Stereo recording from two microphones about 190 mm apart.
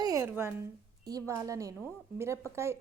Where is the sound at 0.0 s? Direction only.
15° right (ahead or behind).